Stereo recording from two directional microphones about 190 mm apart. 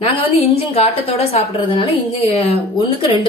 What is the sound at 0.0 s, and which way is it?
A woman's voice, 30° left (ahead or behind).